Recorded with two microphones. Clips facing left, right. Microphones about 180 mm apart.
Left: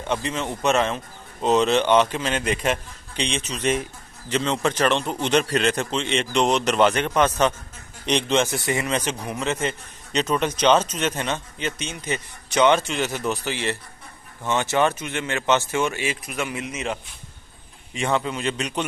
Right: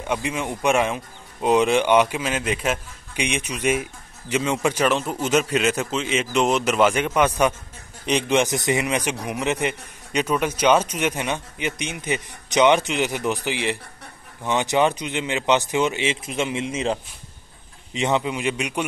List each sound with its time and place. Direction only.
0.0 s speech: 10° right (ahead or behind); by 17.0 s 30° right (ahead or behind)
17.9 s speech: 20° right (ahead or behind)